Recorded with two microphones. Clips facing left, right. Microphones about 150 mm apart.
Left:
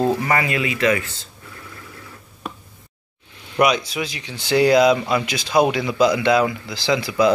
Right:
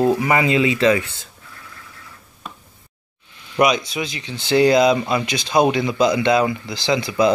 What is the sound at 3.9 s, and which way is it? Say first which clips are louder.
Speech: right 1 dB; 10° left (ahead or behind).